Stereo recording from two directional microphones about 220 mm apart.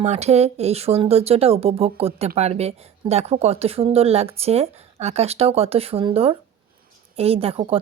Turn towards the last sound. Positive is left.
turn(degrees=-25)  # may be behind; listen again after turning